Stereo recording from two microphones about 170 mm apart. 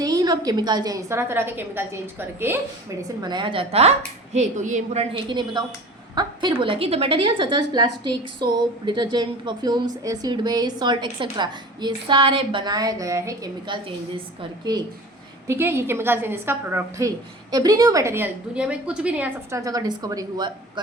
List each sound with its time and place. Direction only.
0.0 s a woman's voice: 20° right (ahead or behind)
3.2 s a woman's voice: 25° right (ahead or behind); by 5.0 s 45° right (ahead or behind)
5.3 s a woman's voice: 25° right (ahead or behind)
15.4 s a woman's voice: 15° right (ahead or behind)